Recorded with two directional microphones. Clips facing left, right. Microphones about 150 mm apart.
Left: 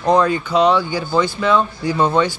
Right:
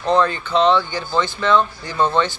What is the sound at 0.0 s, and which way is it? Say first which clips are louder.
Speech: left 2 dB; 10° left (ahead or behind).